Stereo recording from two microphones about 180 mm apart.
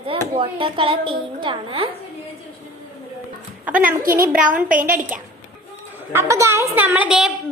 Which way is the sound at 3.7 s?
10° right (ahead or behind).